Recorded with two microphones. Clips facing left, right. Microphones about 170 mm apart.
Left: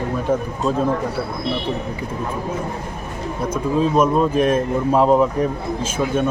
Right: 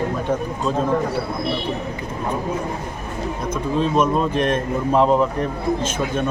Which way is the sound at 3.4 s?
10° left (ahead or behind).